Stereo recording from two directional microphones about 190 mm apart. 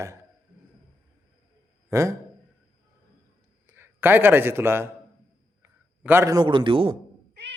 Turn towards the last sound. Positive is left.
turn(degrees=-25)  # may be behind; listen again after turning